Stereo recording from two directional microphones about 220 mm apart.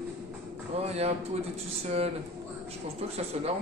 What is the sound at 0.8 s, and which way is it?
Speech, 30° right (ahead or behind).